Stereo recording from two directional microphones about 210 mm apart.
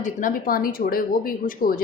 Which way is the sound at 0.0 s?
40° left (ahead or behind).